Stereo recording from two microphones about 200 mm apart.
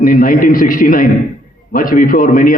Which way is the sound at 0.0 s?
45° left (ahead or behind).